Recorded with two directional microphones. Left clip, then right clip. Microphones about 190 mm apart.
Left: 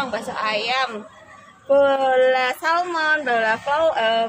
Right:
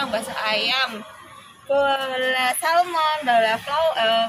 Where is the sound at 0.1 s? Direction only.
50° left (ahead or behind).